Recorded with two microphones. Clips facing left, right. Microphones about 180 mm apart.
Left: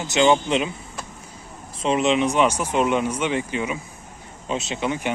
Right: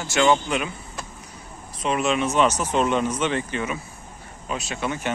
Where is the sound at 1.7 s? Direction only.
25° left (ahead or behind).